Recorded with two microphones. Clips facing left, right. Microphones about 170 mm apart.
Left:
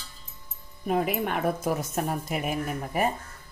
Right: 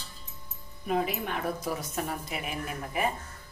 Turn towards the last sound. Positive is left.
turn(degrees=45)  # may be behind; listen again after turning